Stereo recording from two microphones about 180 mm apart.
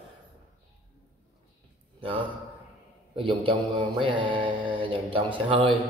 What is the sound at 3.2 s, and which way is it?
Mantra, 30° right (ahead or behind).